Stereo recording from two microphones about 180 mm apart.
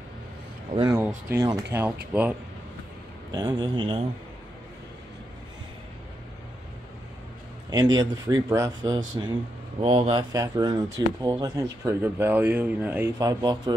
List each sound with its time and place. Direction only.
0.7 s speech: 20° right (ahead or behind)
3.3 s speech: 20° right (ahead or behind)
7.7 s speech: 20° right (ahead or behind)
9.8 s speech: 30° right (ahead or behind)
10.3 s speech: 20° right (ahead or behind)